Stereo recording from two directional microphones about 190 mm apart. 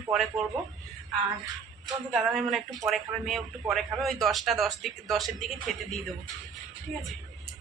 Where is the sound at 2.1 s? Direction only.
Centre (ahead or behind).